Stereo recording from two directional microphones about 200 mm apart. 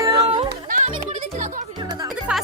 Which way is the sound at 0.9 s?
35° right (ahead or behind).